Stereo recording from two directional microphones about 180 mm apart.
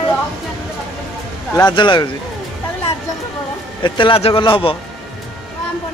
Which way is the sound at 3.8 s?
30° left (ahead or behind).